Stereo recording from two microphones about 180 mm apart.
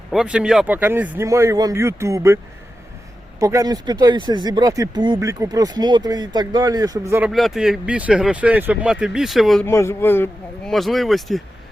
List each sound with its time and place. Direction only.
0.1 s speech: 5° right (ahead or behind)
3.4 s speech: 20° right (ahead or behind)
7.3 s speech: centre (ahead or behind)
9.6 s speech: 15° left (ahead or behind)